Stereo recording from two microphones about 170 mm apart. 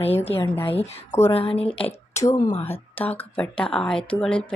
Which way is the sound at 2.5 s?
35° left (ahead or behind).